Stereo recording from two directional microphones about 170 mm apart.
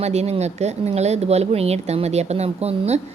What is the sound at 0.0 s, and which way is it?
A woman's voice, 40° right (ahead or behind).